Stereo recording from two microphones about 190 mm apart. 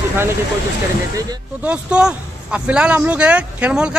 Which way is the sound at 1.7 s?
5° right (ahead or behind).